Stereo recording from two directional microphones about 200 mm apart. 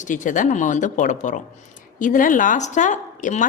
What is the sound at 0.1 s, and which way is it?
A woman's voice, 40° left (ahead or behind).